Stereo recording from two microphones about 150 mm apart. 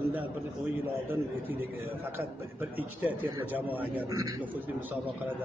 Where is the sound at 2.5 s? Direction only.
10° right (ahead or behind).